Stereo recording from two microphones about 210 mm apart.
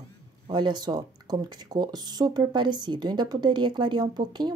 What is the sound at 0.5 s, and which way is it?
Speech, 20° right (ahead or behind).